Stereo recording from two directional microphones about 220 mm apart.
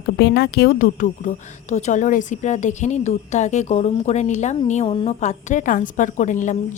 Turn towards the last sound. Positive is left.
turn(degrees=35)  # may be behind; listen again after turning